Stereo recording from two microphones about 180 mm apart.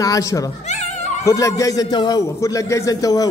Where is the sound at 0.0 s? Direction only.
20° left (ahead or behind).